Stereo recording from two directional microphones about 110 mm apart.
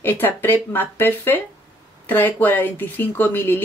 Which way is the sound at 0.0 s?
20° left (ahead or behind).